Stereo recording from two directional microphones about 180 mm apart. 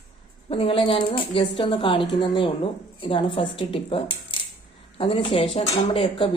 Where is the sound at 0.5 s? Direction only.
30° left (ahead or behind).